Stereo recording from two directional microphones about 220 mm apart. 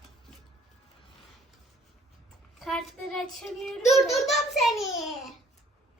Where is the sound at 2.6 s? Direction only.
Centre (ahead or behind).